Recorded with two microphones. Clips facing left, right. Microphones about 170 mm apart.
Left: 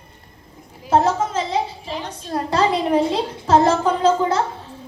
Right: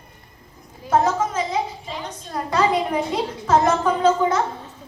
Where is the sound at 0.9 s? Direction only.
30° left (ahead or behind).